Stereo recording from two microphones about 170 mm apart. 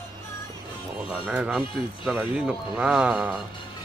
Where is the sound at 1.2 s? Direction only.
5° right (ahead or behind).